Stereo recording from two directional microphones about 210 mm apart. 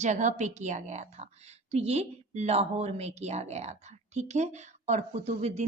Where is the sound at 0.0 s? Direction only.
35° right (ahead or behind).